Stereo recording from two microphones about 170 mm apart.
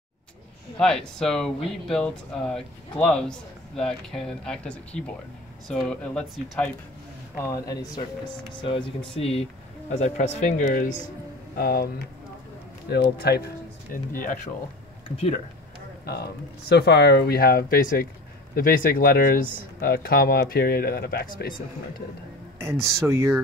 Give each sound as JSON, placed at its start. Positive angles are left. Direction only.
{"t": 0.7, "sound": "speech", "side_deg": 5}
{"t": 7.3, "sound": "speech", "side_deg": 15}
{"t": 9.1, "sound": "speech", "side_deg": 35}
{"t": 11.5, "sound": "speech", "side_deg": 60}
{"t": 12.9, "sound": "speech", "side_deg": 70}
{"t": 13.9, "sound": "speech", "side_deg": 55}
{"t": 15.1, "sound": "speech", "side_deg": 35}
{"t": 16.1, "sound": "speech", "side_deg": 70}
{"t": 22.6, "sound": "speech", "side_deg": -15}